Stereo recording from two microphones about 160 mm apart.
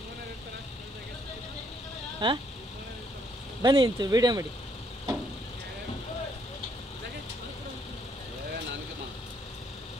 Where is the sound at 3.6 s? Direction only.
30° right (ahead or behind).